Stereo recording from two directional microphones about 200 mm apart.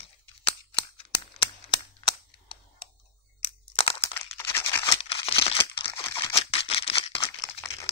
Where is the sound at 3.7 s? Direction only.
25° left (ahead or behind).